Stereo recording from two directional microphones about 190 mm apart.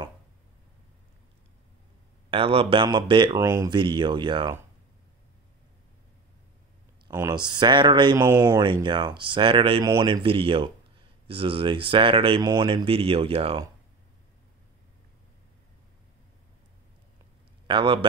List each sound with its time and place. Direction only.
2.3 s speech: 30° right (ahead or behind)
7.1 s speech: 20° right (ahead or behind)
8.2 s speech: 15° right (ahead or behind); by 13.7 s 30° right (ahead or behind)
17.6 s speech: 25° right (ahead or behind)